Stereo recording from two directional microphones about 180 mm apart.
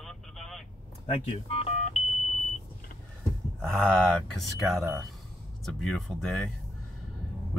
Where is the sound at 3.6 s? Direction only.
5° left (ahead or behind).